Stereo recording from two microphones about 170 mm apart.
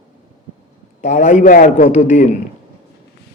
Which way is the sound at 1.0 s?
45° left (ahead or behind).